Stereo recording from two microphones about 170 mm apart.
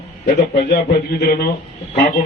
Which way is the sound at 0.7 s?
65° left (ahead or behind).